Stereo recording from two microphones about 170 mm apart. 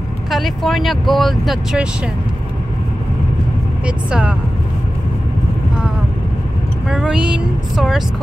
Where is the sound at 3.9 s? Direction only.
5° right (ahead or behind).